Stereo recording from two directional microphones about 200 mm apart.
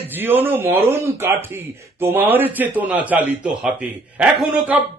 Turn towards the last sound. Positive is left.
turn(degrees=-5)  # may be behind; listen again after turning